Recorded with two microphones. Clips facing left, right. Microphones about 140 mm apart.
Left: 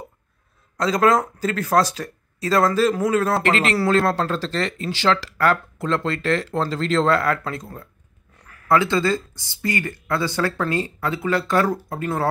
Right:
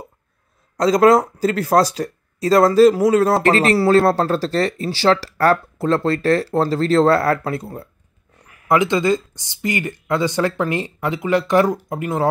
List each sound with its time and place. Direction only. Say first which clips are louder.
0.7 s speech: right 5 dB; 35° right (ahead or behind)
8.5 s speech: right 2 dB; 15° right (ahead or behind)